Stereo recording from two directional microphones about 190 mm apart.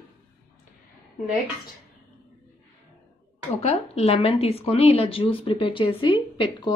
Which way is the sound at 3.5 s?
35° left (ahead or behind).